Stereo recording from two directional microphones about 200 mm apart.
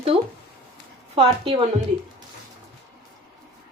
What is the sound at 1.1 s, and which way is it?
Speech, 30° right (ahead or behind).